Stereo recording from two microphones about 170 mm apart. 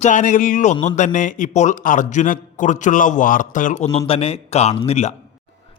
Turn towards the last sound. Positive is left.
turn(degrees=40)  # may be behind; listen again after turning